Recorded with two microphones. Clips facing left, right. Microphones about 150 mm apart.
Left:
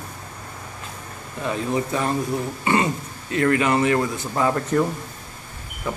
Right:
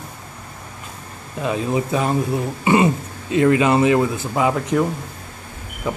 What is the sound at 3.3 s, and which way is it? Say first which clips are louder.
Speech: right 4 dB; 20° right (ahead or behind).